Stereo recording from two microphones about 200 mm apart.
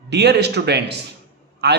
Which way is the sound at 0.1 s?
55° right (ahead or behind).